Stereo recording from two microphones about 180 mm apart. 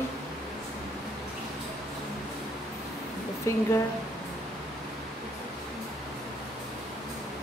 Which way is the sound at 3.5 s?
15° left (ahead or behind).